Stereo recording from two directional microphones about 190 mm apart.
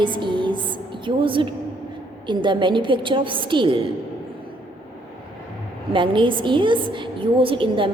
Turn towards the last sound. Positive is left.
turn(degrees=-25)  # may be behind; listen again after turning